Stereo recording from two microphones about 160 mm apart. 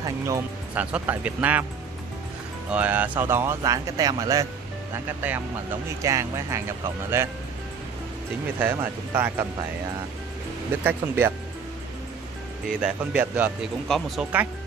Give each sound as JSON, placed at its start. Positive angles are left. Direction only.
{"t": 0.7, "sound": "speech", "side_deg": -10}
{"t": 2.7, "sound": "speech", "side_deg": -10}
{"t": 8.5, "sound": "speech", "side_deg": -15}
{"t": 10.8, "sound": "speech", "side_deg": -15}
{"t": 12.8, "sound": "speech", "side_deg": -5}